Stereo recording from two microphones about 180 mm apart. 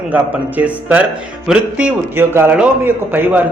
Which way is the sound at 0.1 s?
10° right (ahead or behind).